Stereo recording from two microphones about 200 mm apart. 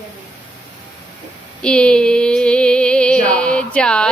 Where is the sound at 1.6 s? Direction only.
5° left (ahead or behind).